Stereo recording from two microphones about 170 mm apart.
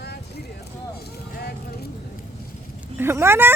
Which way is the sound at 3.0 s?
15° right (ahead or behind).